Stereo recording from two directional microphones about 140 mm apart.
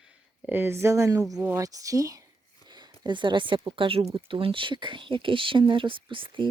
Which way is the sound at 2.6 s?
30° right (ahead or behind).